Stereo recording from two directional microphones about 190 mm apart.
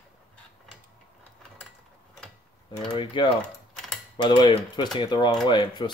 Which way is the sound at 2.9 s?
25° left (ahead or behind).